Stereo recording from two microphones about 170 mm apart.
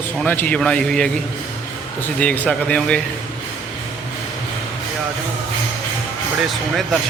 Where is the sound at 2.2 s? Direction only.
10° left (ahead or behind).